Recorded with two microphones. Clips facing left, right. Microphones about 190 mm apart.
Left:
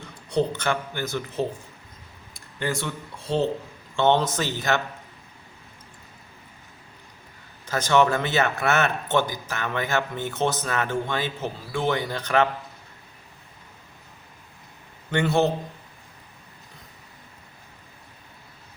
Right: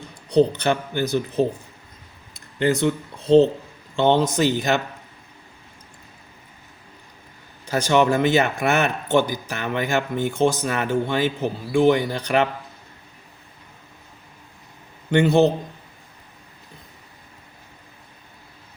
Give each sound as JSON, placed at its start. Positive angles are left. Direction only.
{"t": 0.3, "sound": "speech", "side_deg": -20}
{"t": 2.6, "sound": "speech", "side_deg": -20}
{"t": 7.7, "sound": "speech", "side_deg": -15}
{"t": 15.1, "sound": "speech", "side_deg": -15}